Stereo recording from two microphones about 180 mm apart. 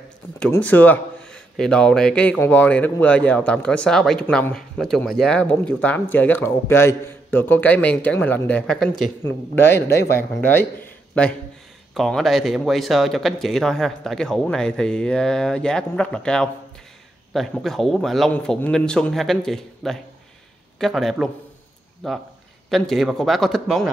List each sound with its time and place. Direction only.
0.4 s speech: 10° left (ahead or behind)
9.6 s speech: 15° left (ahead or behind)